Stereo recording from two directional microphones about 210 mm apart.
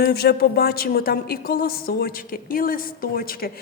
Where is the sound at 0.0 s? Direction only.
45° left (ahead or behind).